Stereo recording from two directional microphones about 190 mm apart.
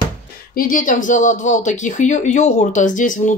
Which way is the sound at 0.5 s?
45° left (ahead or behind).